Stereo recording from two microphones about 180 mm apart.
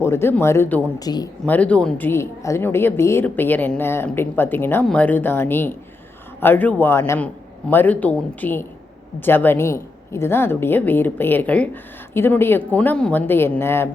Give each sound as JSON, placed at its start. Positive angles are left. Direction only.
{"t": 0.0, "sound": "a woman's voice", "side_deg": 15}
{"t": 1.5, "sound": "a woman's voice", "side_deg": 10}